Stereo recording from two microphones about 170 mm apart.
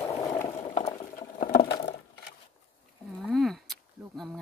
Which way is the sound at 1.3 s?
60° left (ahead or behind).